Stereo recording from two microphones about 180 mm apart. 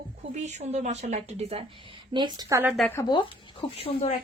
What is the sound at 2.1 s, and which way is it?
Speech, 25° right (ahead or behind).